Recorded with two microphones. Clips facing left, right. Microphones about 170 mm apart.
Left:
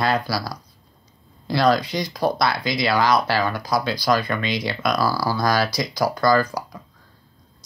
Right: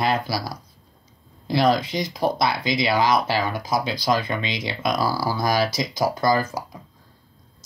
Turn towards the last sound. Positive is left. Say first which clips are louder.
# left 2 dB
turn(degrees=-20)  # may be behind; listen again after turning